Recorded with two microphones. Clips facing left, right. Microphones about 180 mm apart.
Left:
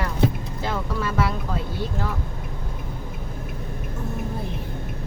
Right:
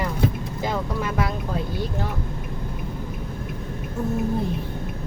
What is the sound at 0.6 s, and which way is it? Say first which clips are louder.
Speech: right 1 dB; 15° right (ahead or behind).